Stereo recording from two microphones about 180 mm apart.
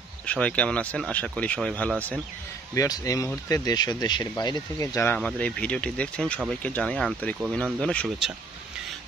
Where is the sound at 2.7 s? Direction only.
20° left (ahead or behind).